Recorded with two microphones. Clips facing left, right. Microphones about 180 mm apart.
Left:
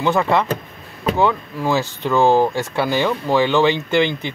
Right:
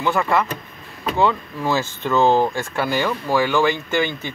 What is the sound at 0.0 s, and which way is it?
Speech, 20° left (ahead or behind).